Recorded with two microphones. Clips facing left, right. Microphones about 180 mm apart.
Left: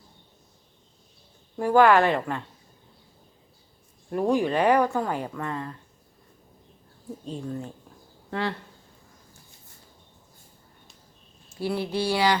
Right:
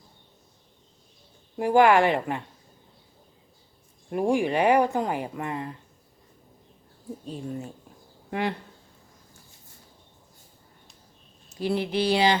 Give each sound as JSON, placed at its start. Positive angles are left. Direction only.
{"t": 1.5, "sound": "speech", "side_deg": -15}
{"t": 4.1, "sound": "speech", "side_deg": -10}
{"t": 7.3, "sound": "speech", "side_deg": -10}
{"t": 11.6, "sound": "speech", "side_deg": -15}